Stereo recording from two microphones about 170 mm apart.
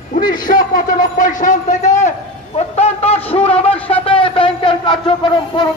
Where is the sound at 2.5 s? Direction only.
35° left (ahead or behind).